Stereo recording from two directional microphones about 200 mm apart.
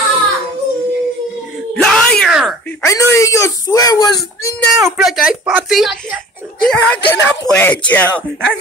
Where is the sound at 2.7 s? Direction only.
15° left (ahead or behind).